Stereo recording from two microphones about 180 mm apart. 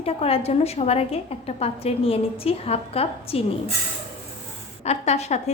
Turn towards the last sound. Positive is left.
turn(degrees=35)  # may be behind; listen again after turning